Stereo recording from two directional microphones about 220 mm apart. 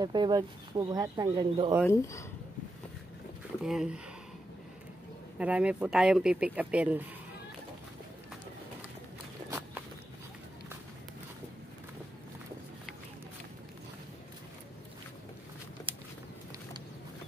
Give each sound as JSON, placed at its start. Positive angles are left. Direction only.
{"t": 0.0, "sound": "speech", "side_deg": -20}
{"t": 1.9, "sound": "speech", "side_deg": 15}
{"t": 3.6, "sound": "speech", "side_deg": -5}
{"t": 5.4, "sound": "speech", "side_deg": -5}